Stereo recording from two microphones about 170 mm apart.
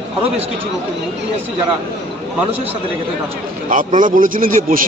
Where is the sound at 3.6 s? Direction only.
50° right (ahead or behind).